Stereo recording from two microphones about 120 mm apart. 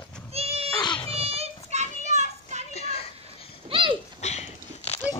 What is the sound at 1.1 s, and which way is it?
Children playing, 55° right (ahead or behind).